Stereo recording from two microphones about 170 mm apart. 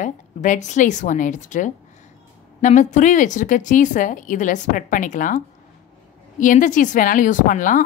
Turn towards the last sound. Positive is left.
turn(degrees=50)  # may be behind; listen again after turning